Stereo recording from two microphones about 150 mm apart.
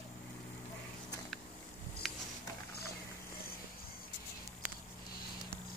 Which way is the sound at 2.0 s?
Centre (ahead or behind).